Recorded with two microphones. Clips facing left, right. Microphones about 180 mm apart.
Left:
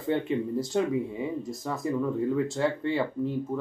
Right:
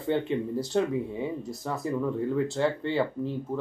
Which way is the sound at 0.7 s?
Centre (ahead or behind).